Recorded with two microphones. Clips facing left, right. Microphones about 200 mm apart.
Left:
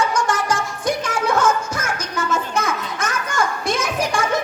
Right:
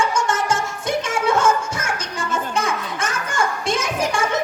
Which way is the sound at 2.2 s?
30° right (ahead or behind).